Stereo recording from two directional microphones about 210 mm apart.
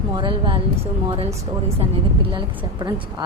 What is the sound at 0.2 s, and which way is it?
Speech, 25° right (ahead or behind).